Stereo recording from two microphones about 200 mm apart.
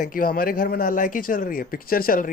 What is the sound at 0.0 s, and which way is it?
Speech, 45° left (ahead or behind).